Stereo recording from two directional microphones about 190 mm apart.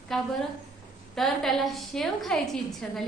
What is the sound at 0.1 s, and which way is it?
A woman's voice, centre (ahead or behind).